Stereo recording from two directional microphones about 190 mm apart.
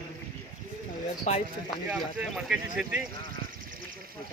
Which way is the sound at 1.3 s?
35° left (ahead or behind).